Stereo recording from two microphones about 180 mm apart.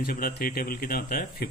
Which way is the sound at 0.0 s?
55° left (ahead or behind).